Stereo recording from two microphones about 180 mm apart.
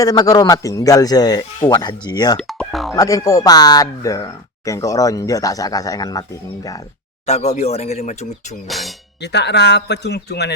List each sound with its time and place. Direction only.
0.0 s speech: 20° left (ahead or behind)
2.4 s speech: centre (ahead or behind)
2.9 s speech: 20° left (ahead or behind)
7.3 s speech: 40° left (ahead or behind)
8.6 s speech: centre (ahead or behind)
9.2 s speech: 70° left (ahead or behind)